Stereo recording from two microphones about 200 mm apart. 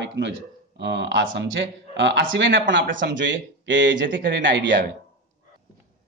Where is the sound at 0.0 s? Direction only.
60° right (ahead or behind).